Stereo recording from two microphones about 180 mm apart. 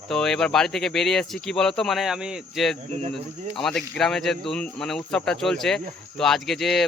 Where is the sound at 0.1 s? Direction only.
5° left (ahead or behind).